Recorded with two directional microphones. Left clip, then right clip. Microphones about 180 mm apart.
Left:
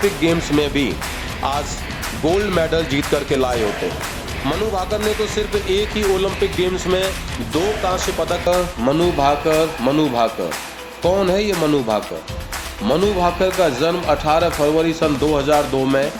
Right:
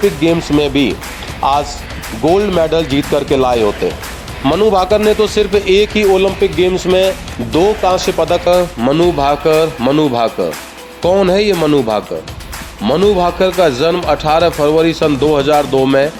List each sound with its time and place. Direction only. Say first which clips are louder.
0.2 s speech: right 5 dB; 20° right (ahead or behind)
2.2 s speech: right 6 dB; 20° right (ahead or behind)
4.7 s speech: right 10 dB; 50° right (ahead or behind)
8.4 s speech: right 6 dB; 50° right (ahead or behind)